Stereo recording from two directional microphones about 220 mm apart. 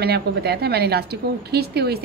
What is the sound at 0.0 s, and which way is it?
A woman's voice, 45° right (ahead or behind).